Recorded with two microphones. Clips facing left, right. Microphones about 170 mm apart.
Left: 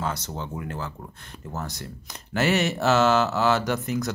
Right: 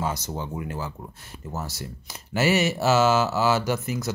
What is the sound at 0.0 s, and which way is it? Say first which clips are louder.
Speech: right 1 dB; 10° right (ahead or behind).